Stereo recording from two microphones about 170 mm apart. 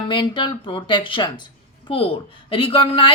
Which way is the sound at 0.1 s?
25° left (ahead or behind).